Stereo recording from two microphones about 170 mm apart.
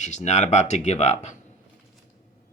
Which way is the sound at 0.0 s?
45° left (ahead or behind).